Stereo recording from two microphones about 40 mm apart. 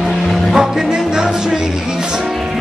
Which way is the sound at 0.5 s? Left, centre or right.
Centre.